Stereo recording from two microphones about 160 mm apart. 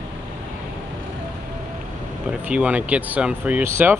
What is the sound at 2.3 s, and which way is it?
Speech, 10° right (ahead or behind).